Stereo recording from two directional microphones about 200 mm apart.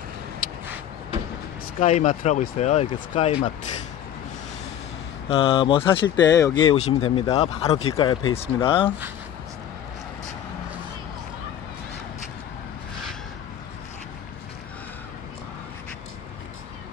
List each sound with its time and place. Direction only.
1.8 s speech: 35° left (ahead or behind)
5.3 s speech: 25° left (ahead or behind)